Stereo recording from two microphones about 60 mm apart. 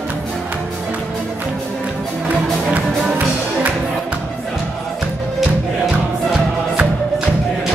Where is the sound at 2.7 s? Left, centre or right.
Right.